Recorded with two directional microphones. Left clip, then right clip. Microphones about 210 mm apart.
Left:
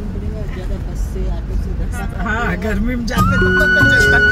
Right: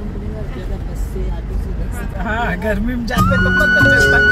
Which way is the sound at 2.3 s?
5° left (ahead or behind).